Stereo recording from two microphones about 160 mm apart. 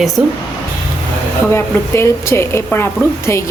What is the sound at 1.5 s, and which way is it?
A woman's voice, 15° left (ahead or behind).